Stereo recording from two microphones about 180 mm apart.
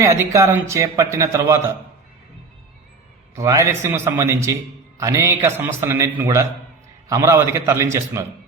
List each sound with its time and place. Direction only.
0.0 s a man's voice: 15° right (ahead or behind)
3.3 s a man's voice: 15° right (ahead or behind)